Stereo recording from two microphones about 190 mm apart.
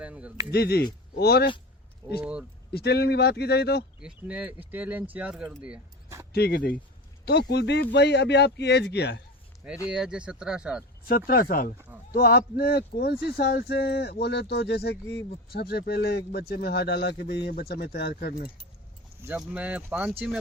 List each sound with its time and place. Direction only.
0.0 s speech: 5° right (ahead or behind)
0.5 s speech: 55° left (ahead or behind)
2.2 s speech: 5° right (ahead or behind)
2.7 s speech: 60° left (ahead or behind)
4.0 s speech: 5° right (ahead or behind)
6.3 s speech: 55° left (ahead or behind)
9.9 s speech: 5° right (ahead or behind)
11.0 s speech: 50° left (ahead or behind)
19.2 s speech: 10° right (ahead or behind)